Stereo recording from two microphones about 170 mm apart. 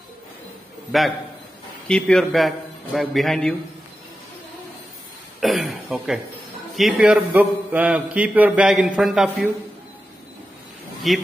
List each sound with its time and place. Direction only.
0.9 s a man's voice: centre (ahead or behind)
5.4 s a man's voice: centre (ahead or behind)
11.1 s a man's voice: centre (ahead or behind)